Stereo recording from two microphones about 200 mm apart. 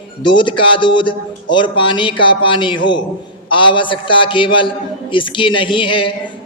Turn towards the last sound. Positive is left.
turn(degrees=25)  # may be behind; listen again after turning